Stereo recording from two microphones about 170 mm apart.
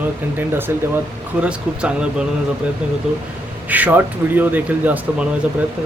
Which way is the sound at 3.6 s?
10° right (ahead or behind).